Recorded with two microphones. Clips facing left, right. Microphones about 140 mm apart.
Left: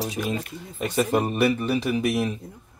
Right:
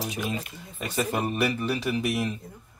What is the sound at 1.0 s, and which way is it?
Speech, 35° left (ahead or behind).